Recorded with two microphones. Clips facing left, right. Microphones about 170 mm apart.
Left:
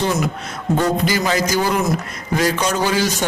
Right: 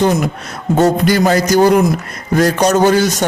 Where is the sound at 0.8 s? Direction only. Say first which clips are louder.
Right 8 dB; 55° right (ahead or behind).